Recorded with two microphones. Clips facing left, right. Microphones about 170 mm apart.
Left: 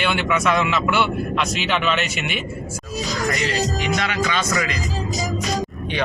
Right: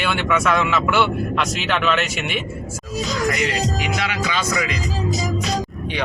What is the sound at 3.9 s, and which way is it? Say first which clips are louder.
Speech: left 1 dB; 10° right (ahead or behind).